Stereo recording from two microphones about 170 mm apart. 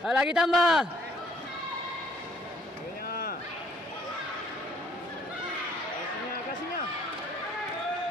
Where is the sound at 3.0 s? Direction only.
60° left (ahead or behind).